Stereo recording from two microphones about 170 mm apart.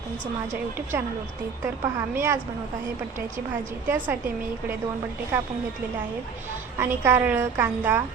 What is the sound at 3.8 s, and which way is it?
Speech, 10° right (ahead or behind).